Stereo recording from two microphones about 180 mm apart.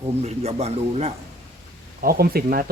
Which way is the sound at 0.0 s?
35° right (ahead or behind).